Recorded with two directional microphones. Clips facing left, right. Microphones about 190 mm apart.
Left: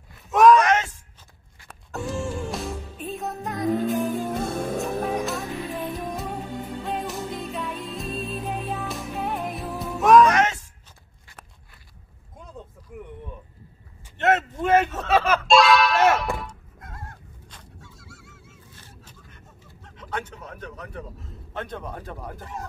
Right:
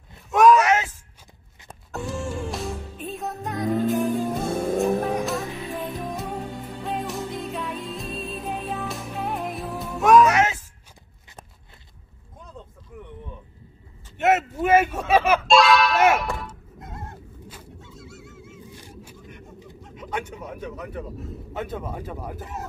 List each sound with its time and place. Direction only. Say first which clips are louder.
0.3 s a sound: even; centre (ahead or behind)
1.9 s music: left 1 dB; centre (ahead or behind)
6.9 s music: right 2 dB; centre (ahead or behind)
12.9 s a sound: left 2 dB; 10° left (ahead or behind)
14.1 s a sound: right 1 dB; 10° right (ahead or behind)
15.4 s thunk: even; centre (ahead or behind)
16.8 s bird: right 4 dB; 20° right (ahead or behind)
17.7 s honk: right 6 dB; 20° right (ahead or behind)
21.5 s speech: right 2 dB; 5° right (ahead or behind)